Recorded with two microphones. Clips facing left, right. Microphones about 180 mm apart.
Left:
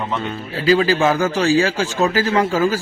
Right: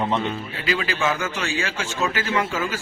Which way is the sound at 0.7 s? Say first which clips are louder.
Left 9 dB; 35° left (ahead or behind).